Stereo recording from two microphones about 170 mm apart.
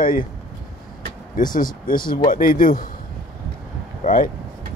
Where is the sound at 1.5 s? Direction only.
55° left (ahead or behind).